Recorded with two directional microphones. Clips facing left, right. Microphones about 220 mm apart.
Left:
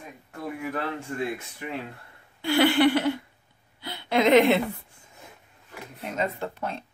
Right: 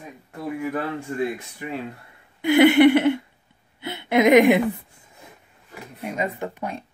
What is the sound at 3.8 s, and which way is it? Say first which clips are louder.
Speech: right 4 dB; 20° right (ahead or behind).